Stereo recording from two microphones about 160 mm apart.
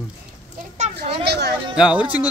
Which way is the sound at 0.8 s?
50° right (ahead or behind).